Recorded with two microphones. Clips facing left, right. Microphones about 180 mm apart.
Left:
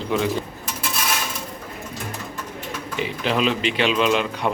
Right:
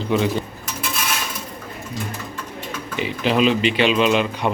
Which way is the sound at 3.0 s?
Centre (ahead or behind).